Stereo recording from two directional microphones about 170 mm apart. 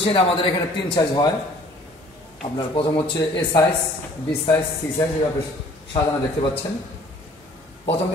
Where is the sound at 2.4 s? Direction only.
30° left (ahead or behind).